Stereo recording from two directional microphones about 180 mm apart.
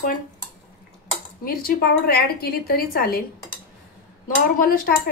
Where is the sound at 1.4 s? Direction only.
55° left (ahead or behind).